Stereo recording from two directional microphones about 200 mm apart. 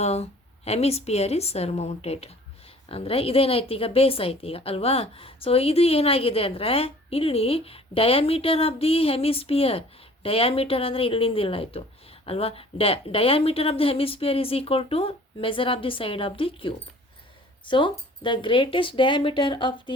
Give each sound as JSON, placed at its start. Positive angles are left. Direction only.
{"t": 0.0, "sound": "a woman's voice", "side_deg": 30}